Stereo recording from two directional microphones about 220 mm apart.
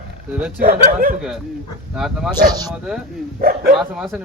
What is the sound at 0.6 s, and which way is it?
Speech, 40° right (ahead or behind).